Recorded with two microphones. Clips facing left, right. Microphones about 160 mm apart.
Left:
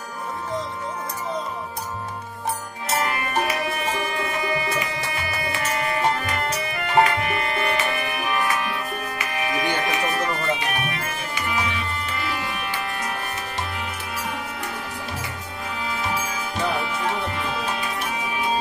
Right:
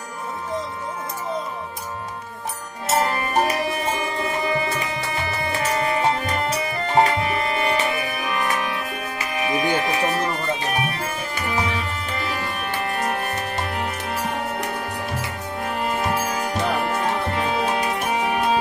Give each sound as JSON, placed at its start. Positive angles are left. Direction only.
{"t": 3.1, "sound": "music", "side_deg": -35}
{"t": 4.5, "sound": "music", "side_deg": -25}
{"t": 9.6, "sound": "music", "side_deg": -35}
{"t": 12.9, "sound": "music", "side_deg": -50}
{"t": 17.4, "sound": "music", "side_deg": -55}